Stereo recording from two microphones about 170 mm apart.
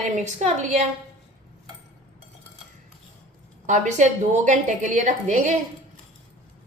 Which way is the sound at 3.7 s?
45° right (ahead or behind).